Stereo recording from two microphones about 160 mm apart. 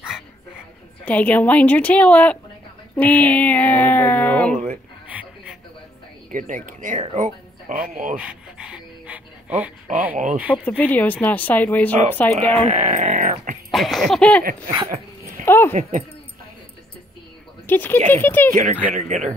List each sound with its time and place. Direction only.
1.0 s speech: 10° left (ahead or behind)
5.0 s a sound: 10° right (ahead or behind)
6.3 s speech: 55° right (ahead or behind)
8.2 s a sound: 5° right (ahead or behind)
10.1 s speech: 50° right (ahead or behind)
10.5 s speech: 10° left (ahead or behind)
12.6 s speech: 45° right (ahead or behind)
13.7 s a sound: centre (ahead or behind)
15.4 s speech: 15° left (ahead or behind)
15.7 s speech: 45° right (ahead or behind)
17.6 s speech: 10° left (ahead or behind)
18.6 s speech: 50° right (ahead or behind)